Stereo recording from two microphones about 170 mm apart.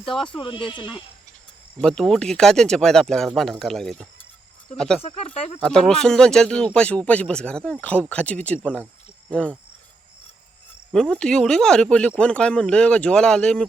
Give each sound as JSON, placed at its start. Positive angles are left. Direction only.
{"t": 0.3, "sound": "speech", "side_deg": 30}
{"t": 1.8, "sound": "speech", "side_deg": 5}
{"t": 5.0, "sound": "speech", "side_deg": 35}
{"t": 5.5, "sound": "speech", "side_deg": 5}
{"t": 10.9, "sound": "speech", "side_deg": 5}